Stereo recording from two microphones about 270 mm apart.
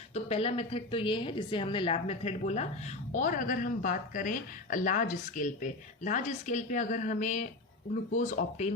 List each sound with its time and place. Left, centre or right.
0.1 s speech: left